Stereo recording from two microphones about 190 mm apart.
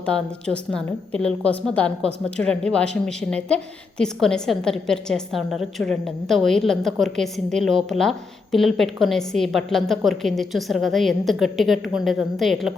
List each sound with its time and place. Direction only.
0.0 s a woman's voice: 5° left (ahead or behind)